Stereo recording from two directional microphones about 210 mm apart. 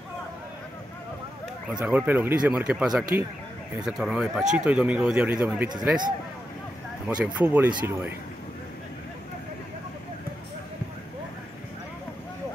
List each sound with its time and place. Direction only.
1.7 s speech: 5° right (ahead or behind)
5.7 s speech: 20° right (ahead or behind)
7.1 s speech: 5° right (ahead or behind)